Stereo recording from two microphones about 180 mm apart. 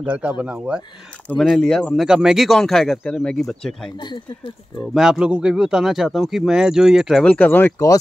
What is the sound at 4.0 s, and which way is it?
Speech, 25° left (ahead or behind).